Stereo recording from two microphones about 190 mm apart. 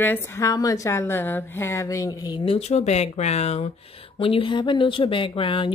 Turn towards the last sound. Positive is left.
turn(degrees=25)  # may be behind; listen again after turning